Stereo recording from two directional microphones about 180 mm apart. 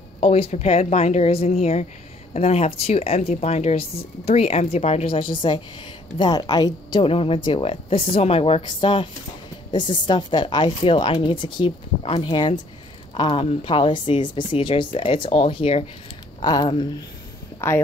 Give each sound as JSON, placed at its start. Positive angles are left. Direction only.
{"t": 0.2, "sound": "a woman's voice", "side_deg": 35}
{"t": 17.6, "sound": "speech", "side_deg": 15}